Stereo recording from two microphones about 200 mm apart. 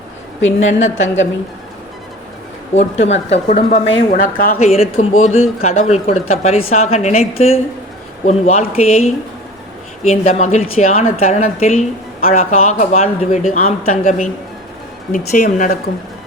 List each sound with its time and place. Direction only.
0.4 s a woman's voice: 35° left (ahead or behind)
0.9 s a woman's voice: 70° left (ahead or behind)
2.7 s a woman's voice: 30° left (ahead or behind)
4.1 s speech: 45° left (ahead or behind)
4.5 s a woman's voice: 30° left (ahead or behind)
15.3 s a woman's voice: 40° left (ahead or behind)